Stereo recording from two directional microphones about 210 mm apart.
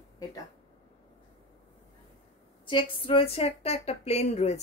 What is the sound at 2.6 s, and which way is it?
Speech, 25° left (ahead or behind).